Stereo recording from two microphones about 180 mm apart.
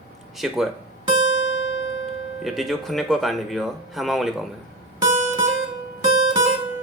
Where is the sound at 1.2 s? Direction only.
90° left.